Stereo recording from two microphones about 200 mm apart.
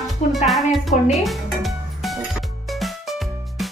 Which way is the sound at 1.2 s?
Centre (ahead or behind).